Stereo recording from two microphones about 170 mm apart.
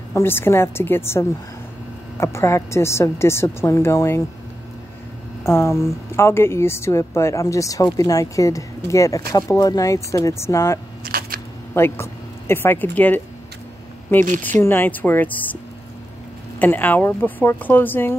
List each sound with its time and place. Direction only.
0.1 s speech: 15° left (ahead or behind)
5.5 s speech: 15° left (ahead or behind)
11.1 s a sound: 60° right (ahead or behind)
11.7 s speech: 15° left (ahead or behind)
14.6 s speech: 10° left (ahead or behind)
16.5 s speech: 10° left (ahead or behind)